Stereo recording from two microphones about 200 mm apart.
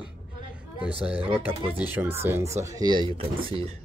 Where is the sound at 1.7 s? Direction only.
10° right (ahead or behind).